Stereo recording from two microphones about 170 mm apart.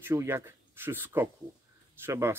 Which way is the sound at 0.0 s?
15° right (ahead or behind).